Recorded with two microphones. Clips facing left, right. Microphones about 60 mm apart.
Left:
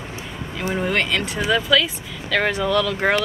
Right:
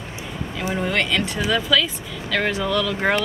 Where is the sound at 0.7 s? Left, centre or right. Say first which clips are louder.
Left 1 dB; centre.